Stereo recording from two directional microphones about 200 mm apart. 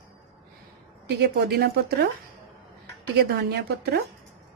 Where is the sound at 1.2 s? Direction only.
55° right (ahead or behind).